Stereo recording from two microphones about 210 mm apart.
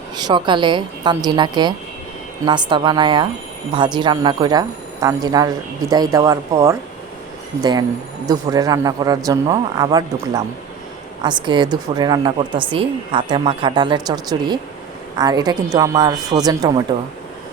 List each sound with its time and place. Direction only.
0.2 s a man's voice: 20° right (ahead or behind)